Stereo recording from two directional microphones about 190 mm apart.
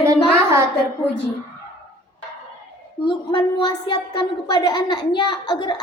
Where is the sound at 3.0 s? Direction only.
25° left (ahead or behind).